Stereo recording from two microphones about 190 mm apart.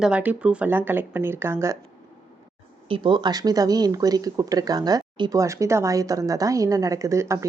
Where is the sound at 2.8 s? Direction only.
25° right (ahead or behind).